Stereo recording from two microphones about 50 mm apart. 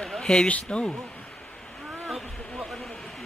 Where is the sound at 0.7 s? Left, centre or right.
Centre.